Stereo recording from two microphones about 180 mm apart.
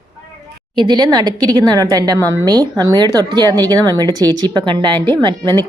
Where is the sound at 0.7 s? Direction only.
25° right (ahead or behind).